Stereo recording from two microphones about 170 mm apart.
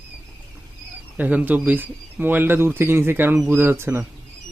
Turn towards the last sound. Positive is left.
turn(degrees=-15)  # may be behind; listen again after turning